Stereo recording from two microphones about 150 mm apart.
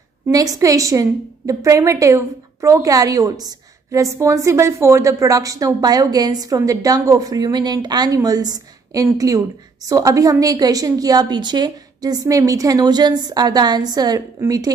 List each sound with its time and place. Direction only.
0.3 s a woman's voice: 25° right (ahead or behind)